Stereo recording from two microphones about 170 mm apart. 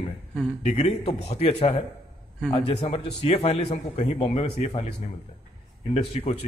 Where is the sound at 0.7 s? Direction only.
40° left (ahead or behind).